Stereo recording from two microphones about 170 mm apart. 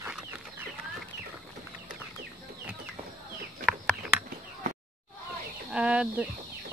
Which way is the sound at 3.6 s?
5° right (ahead or behind).